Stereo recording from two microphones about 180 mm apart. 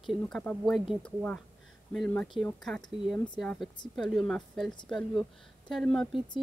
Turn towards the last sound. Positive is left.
turn(degrees=5)  # may be behind; listen again after turning